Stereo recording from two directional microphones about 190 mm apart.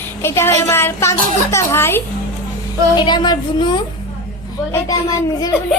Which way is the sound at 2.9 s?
25° left (ahead or behind).